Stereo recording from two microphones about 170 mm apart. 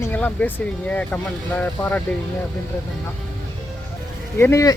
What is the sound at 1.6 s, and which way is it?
Speech, 10° left (ahead or behind).